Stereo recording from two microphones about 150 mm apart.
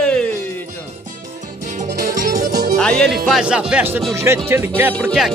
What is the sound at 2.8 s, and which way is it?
Speech, 5° left (ahead or behind).